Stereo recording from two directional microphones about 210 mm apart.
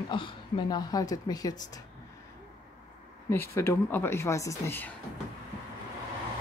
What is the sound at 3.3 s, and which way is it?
Speech, 10° left (ahead or behind).